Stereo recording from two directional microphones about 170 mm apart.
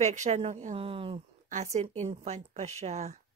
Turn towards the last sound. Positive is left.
turn(degrees=-40)  # may be behind; listen again after turning